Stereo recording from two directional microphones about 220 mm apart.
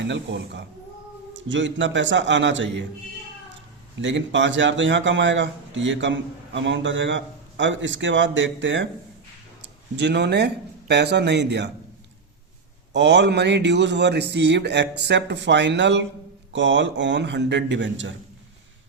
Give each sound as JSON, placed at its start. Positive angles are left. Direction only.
{"t": 0.0, "sound": "speech", "side_deg": -50}
{"t": 4.0, "sound": "speech", "side_deg": -55}
{"t": 12.9, "sound": "speech", "side_deg": -55}